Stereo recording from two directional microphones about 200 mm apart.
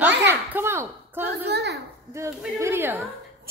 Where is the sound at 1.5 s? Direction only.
55° right (ahead or behind).